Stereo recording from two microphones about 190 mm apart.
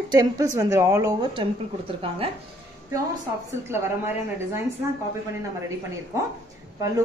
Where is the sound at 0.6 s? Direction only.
15° right (ahead or behind).